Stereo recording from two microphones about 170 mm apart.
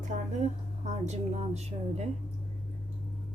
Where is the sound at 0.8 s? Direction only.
40° right (ahead or behind).